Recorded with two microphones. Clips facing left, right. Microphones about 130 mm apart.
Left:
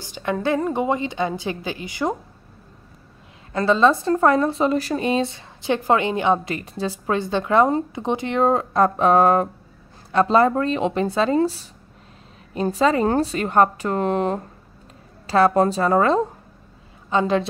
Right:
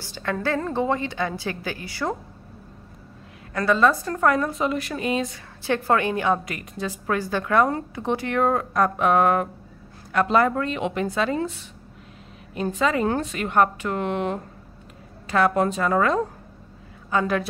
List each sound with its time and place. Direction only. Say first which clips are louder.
0.0 s a woman's voice: left 3 dB; 20° left (ahead or behind)
3.5 s a woman's voice: left 3 dB; 25° left (ahead or behind)